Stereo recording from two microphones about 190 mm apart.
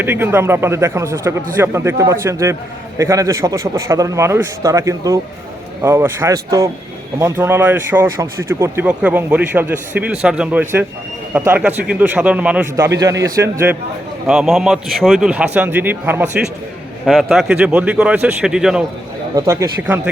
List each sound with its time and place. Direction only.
0.0 s speech: 10° right (ahead or behind)
13.0 s speech: 15° right (ahead or behind)
14.3 s speech: centre (ahead or behind)
17.1 s speech: centre (ahead or behind)
19.4 s speech: 15° right (ahead or behind)